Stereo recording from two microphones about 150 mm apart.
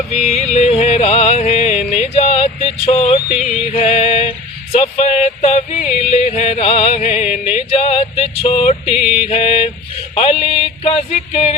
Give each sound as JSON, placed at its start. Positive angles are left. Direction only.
{"t": 0.1, "sound": "music", "side_deg": 50}
{"t": 3.3, "sound": "music", "side_deg": 0}
{"t": 3.8, "sound": "music", "side_deg": 50}
{"t": 4.7, "sound": "a sound", "side_deg": 45}
{"t": 5.9, "sound": "music", "side_deg": 45}
{"t": 9.0, "sound": "music", "side_deg": -5}
{"t": 9.3, "sound": "mantra", "side_deg": 40}
{"t": 10.6, "sound": "a sound", "side_deg": 40}